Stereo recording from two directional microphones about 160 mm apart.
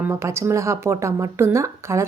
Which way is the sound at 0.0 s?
15° right (ahead or behind).